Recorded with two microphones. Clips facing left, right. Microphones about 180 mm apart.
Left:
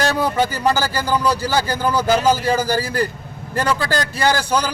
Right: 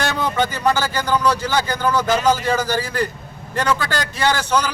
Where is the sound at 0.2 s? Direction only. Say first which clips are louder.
Left 2 dB; 10° left (ahead or behind).